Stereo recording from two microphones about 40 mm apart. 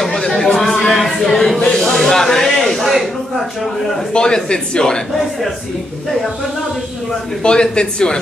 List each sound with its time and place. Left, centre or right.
0.0 s chatter: centre
0.6 s a sound: centre
1.8 s speech: centre
2.8 s a man's voice: centre
4.1 s speech: left
7.4 s speech: left